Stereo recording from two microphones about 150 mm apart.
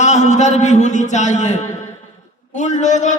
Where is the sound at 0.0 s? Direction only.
50° left (ahead or behind).